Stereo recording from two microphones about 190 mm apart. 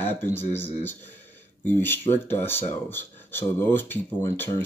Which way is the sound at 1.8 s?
10° left (ahead or behind).